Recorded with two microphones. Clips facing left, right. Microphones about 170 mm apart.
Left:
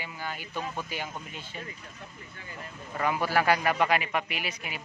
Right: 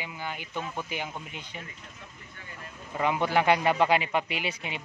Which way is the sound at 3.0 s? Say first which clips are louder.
Right 1 dB; 20° right (ahead or behind).